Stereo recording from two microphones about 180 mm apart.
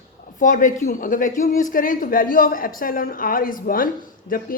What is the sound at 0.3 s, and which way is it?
A woman's voice, 45° left (ahead or behind).